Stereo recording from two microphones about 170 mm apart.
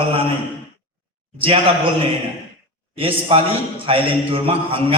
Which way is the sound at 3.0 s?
35° right (ahead or behind).